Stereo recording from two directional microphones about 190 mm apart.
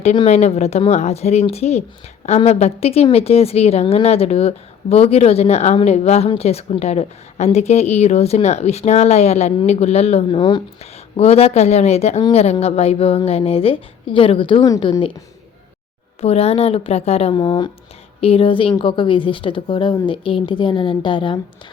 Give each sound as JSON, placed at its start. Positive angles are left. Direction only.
{"t": 0.0, "sound": "a woman's voice", "side_deg": 35}
{"t": 16.2, "sound": "a woman's voice", "side_deg": 30}